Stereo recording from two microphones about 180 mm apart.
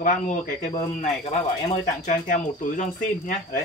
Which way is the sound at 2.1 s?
45° left (ahead or behind).